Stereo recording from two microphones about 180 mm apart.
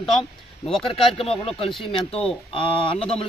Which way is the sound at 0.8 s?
30° left (ahead or behind).